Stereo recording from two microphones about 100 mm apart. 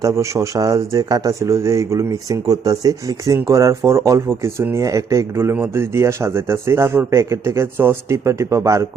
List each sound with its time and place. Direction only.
0.0 s a man's voice: 30° right (ahead or behind)